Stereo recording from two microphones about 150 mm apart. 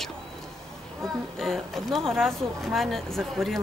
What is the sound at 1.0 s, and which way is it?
Speech, centre (ahead or behind).